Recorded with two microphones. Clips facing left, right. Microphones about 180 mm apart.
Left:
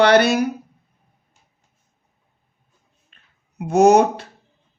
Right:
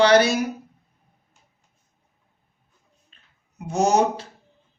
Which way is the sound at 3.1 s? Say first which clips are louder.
Left 2 dB; 60° left (ahead or behind).